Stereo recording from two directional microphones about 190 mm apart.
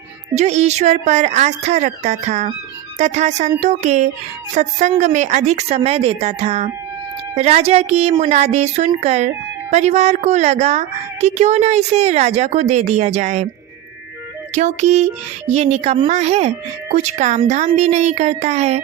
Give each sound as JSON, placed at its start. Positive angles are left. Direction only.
{"t": 0.3, "sound": "a woman's voice", "side_deg": -35}
{"t": 14.5, "sound": "a woman's voice", "side_deg": -40}